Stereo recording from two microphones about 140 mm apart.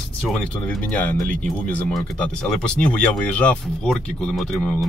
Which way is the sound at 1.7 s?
5° left (ahead or behind).